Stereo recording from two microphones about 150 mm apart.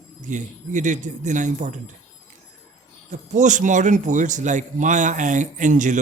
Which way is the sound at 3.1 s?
55° right (ahead or behind).